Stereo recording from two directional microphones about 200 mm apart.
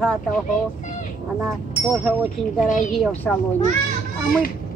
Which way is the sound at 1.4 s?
5° right (ahead or behind).